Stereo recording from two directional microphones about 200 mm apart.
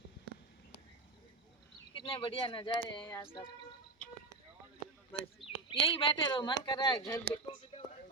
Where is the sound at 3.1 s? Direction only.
15° left (ahead or behind).